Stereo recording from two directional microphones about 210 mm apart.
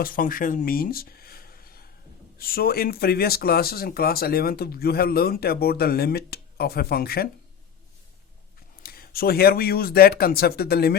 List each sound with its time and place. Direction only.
0.0 s speech: 40° left (ahead or behind)
8.8 s speech: 45° left (ahead or behind)